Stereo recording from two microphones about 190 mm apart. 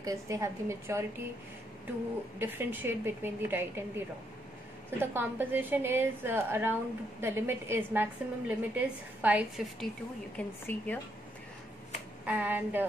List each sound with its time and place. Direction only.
0.0 s a woman's voice: 15° right (ahead or behind)
2.3 s a woman's voice: 10° right (ahead or behind)
10.3 s speech: 10° left (ahead or behind)
12.3 s a woman's voice: 10° right (ahead or behind)